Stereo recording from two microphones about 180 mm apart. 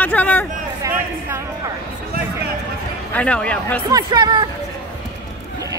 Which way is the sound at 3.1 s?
5° left (ahead or behind).